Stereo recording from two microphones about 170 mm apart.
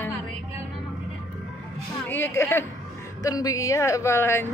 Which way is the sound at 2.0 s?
10° left (ahead or behind).